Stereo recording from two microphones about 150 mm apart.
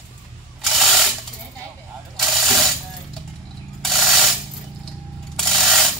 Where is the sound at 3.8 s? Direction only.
Centre (ahead or behind).